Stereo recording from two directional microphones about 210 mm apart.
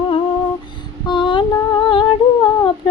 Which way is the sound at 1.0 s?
20° left (ahead or behind).